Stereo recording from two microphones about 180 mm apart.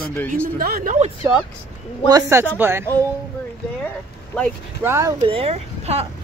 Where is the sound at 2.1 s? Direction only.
20° right (ahead or behind).